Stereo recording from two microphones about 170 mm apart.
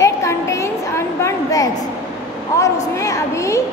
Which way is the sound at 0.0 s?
20° left (ahead or behind).